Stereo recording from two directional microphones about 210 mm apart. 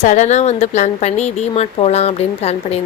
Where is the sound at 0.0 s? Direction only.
35° left (ahead or behind).